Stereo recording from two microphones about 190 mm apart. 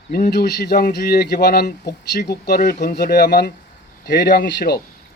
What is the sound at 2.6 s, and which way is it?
Speech, 50° left (ahead or behind).